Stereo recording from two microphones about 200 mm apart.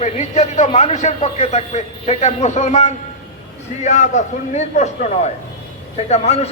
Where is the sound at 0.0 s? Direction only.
35° left (ahead or behind).